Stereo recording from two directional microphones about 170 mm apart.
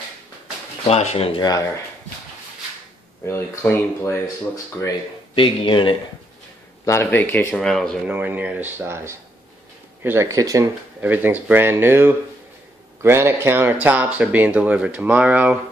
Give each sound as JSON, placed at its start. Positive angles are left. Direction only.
{"t": 0.8, "sound": "speech", "side_deg": 40}
{"t": 3.3, "sound": "speech", "side_deg": 15}
{"t": 5.3, "sound": "speech", "side_deg": 30}
{"t": 6.9, "sound": "speech", "side_deg": 15}
{"t": 8.1, "sound": "speech", "side_deg": -10}